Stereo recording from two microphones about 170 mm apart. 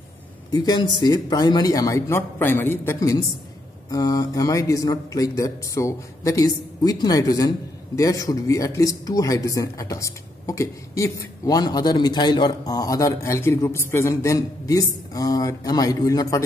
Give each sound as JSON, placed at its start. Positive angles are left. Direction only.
{"t": 0.5, "sound": "a man's voice", "side_deg": 25}